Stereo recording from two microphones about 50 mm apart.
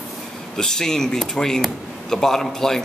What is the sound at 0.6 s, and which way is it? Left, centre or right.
A man's voice, centre.